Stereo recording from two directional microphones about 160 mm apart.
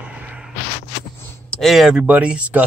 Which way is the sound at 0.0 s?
5° right (ahead or behind).